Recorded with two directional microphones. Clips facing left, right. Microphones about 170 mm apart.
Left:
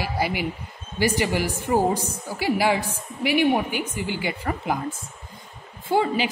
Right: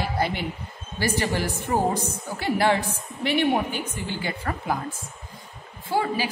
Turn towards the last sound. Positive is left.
turn(degrees=20)  # may be behind; listen again after turning